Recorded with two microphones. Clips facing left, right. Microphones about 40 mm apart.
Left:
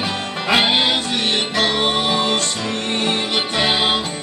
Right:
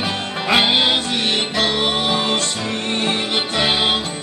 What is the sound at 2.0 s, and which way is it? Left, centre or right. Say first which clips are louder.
Music: left 1 dB; right.